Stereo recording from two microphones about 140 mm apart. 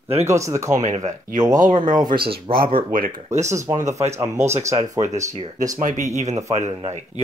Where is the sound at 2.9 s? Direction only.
80° right.